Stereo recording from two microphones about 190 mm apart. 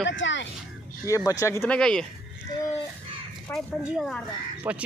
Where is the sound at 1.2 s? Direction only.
15° left (ahead or behind).